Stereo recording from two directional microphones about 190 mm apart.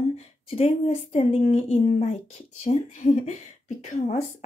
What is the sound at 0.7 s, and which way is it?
A woman's voice, 35° left (ahead or behind).